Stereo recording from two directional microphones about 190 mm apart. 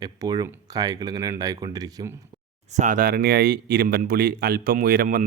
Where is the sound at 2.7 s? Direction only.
40° right (ahead or behind).